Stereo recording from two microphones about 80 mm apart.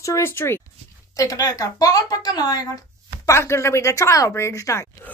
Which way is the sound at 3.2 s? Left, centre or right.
Left.